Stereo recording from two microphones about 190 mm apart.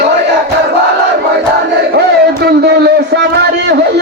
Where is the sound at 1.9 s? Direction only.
60° right (ahead or behind).